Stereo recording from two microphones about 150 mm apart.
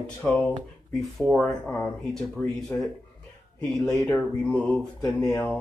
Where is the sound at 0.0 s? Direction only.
10° left (ahead or behind).